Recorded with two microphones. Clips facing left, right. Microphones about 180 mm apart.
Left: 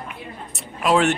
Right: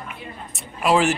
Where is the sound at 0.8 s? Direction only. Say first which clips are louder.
Even; centre (ahead or behind).